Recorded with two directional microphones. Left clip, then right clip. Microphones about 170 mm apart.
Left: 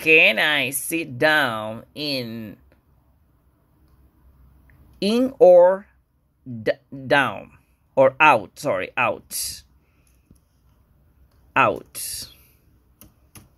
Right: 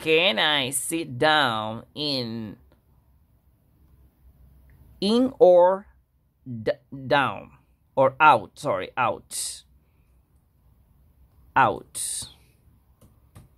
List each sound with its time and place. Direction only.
0.0 s speech: 5° right (ahead or behind)
2.3 s speech: 20° right (ahead or behind)
5.2 s speech: 5° right (ahead or behind)
7.1 s a sound: centre (ahead or behind)
8.0 s speech: centre (ahead or behind)
11.5 s speech: 5° right (ahead or behind)